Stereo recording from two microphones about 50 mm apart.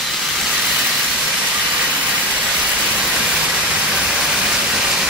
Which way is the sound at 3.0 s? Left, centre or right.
Centre.